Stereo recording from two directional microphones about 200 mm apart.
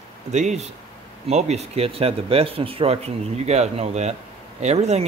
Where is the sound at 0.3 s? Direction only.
35° right (ahead or behind).